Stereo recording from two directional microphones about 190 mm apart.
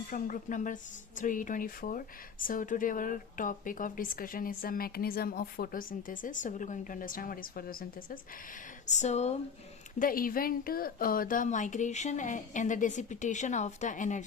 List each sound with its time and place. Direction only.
0.1 s speech: 45° left (ahead or behind)
8.9 s a woman's voice: 35° left (ahead or behind)
10.0 s a woman's voice: 50° left (ahead or behind)